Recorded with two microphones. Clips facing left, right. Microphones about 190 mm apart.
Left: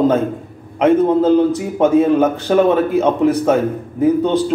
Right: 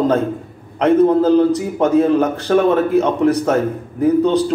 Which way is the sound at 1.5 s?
5° left (ahead or behind).